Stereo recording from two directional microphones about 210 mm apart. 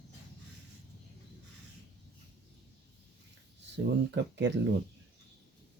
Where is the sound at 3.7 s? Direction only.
55° right (ahead or behind).